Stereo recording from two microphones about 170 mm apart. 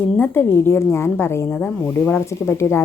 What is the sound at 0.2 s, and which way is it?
A woman's voice, 10° left (ahead or behind).